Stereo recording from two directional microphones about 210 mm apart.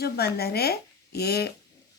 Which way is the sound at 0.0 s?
50° left (ahead or behind).